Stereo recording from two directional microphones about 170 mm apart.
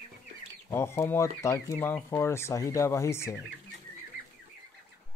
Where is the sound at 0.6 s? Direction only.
15° left (ahead or behind).